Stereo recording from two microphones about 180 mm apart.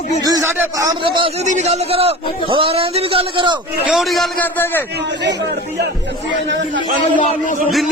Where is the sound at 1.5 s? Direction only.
40° right (ahead or behind).